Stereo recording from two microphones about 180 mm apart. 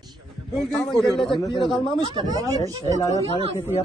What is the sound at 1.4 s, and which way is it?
Speech, 25° left (ahead or behind).